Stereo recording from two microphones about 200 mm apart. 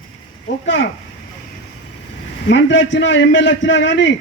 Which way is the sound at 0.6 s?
65° left (ahead or behind).